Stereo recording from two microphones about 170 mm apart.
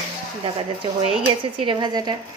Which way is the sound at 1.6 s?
25° right (ahead or behind).